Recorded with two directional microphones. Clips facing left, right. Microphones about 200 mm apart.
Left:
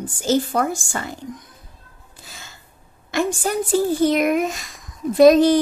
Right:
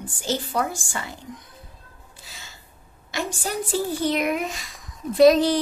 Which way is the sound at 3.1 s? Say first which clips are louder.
Left 7 dB; 55° left (ahead or behind).